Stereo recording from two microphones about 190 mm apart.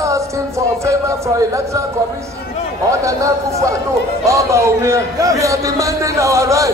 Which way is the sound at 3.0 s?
15° right (ahead or behind).